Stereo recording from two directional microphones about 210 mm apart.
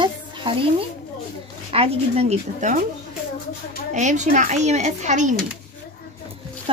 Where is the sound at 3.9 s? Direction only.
35° right (ahead or behind).